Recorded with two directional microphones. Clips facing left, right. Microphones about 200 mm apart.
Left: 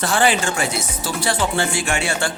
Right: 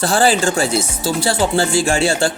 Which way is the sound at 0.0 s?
35° right (ahead or behind).